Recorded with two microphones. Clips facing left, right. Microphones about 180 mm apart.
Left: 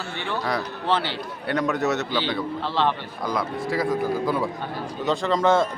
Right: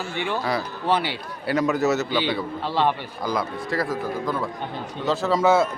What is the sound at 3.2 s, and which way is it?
A man's voice, centre (ahead or behind).